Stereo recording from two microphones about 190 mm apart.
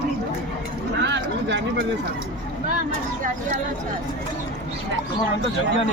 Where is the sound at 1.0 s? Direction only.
65° right (ahead or behind).